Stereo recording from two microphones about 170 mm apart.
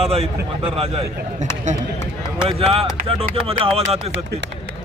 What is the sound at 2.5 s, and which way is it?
Speech, 35° right (ahead or behind).